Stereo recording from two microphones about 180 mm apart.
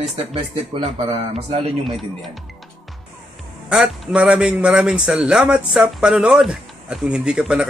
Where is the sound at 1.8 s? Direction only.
Centre (ahead or behind).